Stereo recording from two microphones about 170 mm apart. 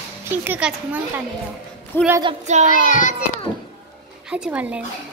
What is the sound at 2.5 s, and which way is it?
Child singing, 45° right (ahead or behind).